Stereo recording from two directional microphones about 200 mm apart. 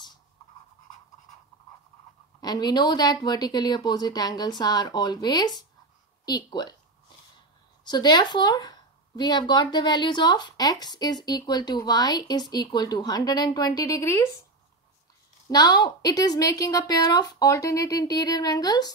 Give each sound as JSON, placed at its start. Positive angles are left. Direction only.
{"t": 2.4, "sound": "a woman's voice", "side_deg": 20}
{"t": 7.8, "sound": "a woman's voice", "side_deg": 20}
{"t": 15.4, "sound": "a woman's voice", "side_deg": 20}